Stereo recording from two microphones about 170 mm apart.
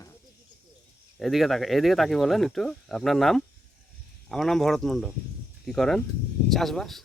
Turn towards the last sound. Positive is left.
turn(degrees=0)  # may be behind; listen again after turning